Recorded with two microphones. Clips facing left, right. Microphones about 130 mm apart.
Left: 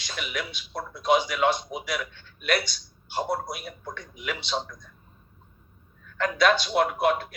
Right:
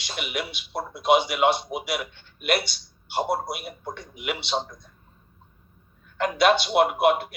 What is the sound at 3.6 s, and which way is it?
A man's voice, 30° right (ahead or behind).